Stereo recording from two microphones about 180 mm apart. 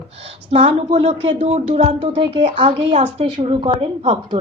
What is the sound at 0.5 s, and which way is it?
A woman's voice, 30° right (ahead or behind).